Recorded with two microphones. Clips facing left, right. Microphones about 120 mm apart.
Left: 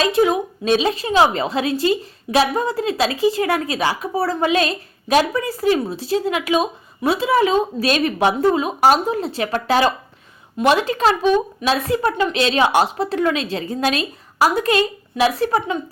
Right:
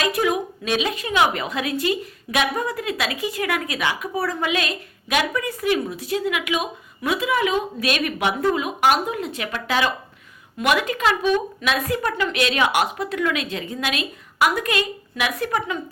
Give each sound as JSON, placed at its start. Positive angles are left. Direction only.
{"t": 0.0, "sound": "a woman's voice", "side_deg": 30}